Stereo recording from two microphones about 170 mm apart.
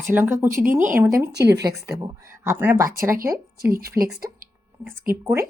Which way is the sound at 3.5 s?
65° right (ahead or behind).